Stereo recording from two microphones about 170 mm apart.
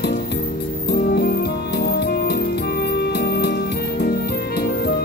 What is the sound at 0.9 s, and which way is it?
Music, 70° left (ahead or behind).